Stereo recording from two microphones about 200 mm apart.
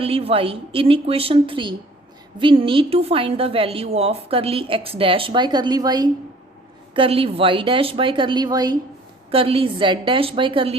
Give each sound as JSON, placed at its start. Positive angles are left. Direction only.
{"t": 0.0, "sound": "a woman's voice", "side_deg": -30}